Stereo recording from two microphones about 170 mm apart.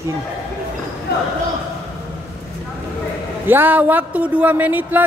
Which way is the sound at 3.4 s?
10° right (ahead or behind).